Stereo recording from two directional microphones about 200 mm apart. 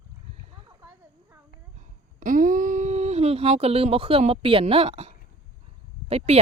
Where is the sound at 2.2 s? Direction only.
40° right (ahead or behind).